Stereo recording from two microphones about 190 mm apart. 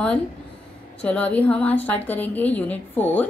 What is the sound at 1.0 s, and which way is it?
Speech, 5° left (ahead or behind).